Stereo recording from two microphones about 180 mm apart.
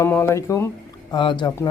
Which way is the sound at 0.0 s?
15° left (ahead or behind).